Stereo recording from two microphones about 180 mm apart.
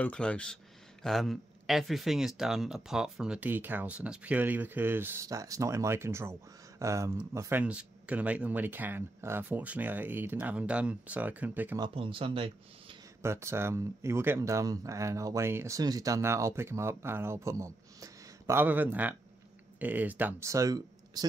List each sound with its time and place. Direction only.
0.0 s speech: 5° left (ahead or behind); by 11.8 s 10° right (ahead or behind)
11.8 s speech: 30° right (ahead or behind)
13.2 s speech: 15° right (ahead or behind)